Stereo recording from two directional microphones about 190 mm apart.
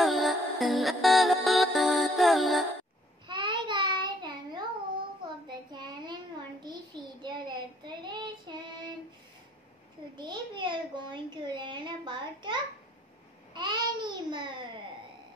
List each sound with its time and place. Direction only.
0.0 s music: centre (ahead or behind)
3.3 s child singing: 25° right (ahead or behind)
5.7 s child singing: 25° right (ahead or behind)
10.1 s a sound: 25° right (ahead or behind)
13.5 s babbling: 25° right (ahead or behind)